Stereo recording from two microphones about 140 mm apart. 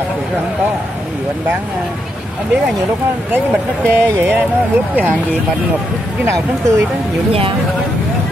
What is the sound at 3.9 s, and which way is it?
Speech, 15° right (ahead or behind).